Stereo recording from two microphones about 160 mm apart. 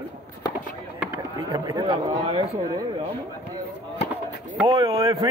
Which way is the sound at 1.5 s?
25° right (ahead or behind).